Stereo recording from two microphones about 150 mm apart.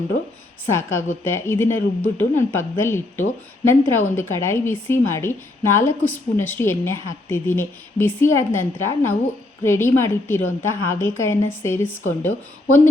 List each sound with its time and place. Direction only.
0.7 s a woman's voice: 15° left (ahead or behind)